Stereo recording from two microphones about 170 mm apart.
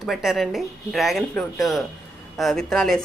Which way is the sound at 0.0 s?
Centre (ahead or behind).